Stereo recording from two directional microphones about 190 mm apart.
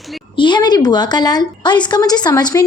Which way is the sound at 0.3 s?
25° left (ahead or behind).